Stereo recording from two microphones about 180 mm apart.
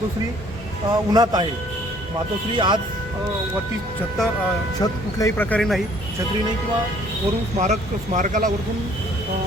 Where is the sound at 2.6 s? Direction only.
25° right (ahead or behind).